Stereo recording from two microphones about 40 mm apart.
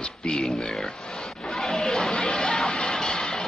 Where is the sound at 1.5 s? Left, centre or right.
Centre.